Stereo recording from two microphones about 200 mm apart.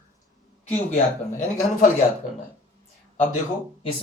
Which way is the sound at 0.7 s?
35° left (ahead or behind).